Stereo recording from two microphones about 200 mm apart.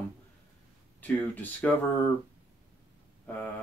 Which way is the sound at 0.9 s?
10° left (ahead or behind).